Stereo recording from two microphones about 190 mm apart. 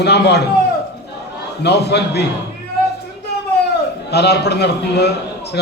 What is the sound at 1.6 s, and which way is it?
Speech, 60° left (ahead or behind).